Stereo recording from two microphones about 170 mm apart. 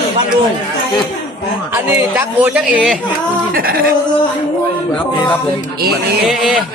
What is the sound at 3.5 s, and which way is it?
Speech, 60° right (ahead or behind).